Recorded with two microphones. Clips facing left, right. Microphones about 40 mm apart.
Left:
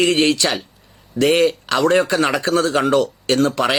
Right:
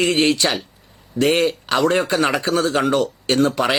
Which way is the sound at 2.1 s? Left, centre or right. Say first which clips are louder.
Left 1 dB; right.